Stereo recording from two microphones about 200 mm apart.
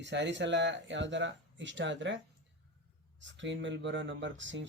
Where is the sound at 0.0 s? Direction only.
60° right (ahead or behind).